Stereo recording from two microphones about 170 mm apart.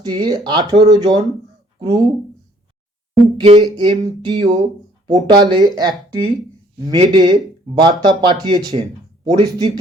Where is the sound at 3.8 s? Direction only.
25° right (ahead or behind).